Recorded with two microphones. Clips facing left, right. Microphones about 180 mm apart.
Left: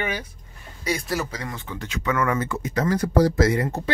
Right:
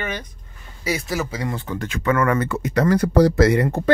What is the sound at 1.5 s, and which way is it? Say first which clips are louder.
Speech: right 7 dB; 35° right (ahead or behind).